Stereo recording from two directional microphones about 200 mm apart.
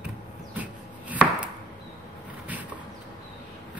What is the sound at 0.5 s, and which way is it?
Chopping, 5° right (ahead or behind).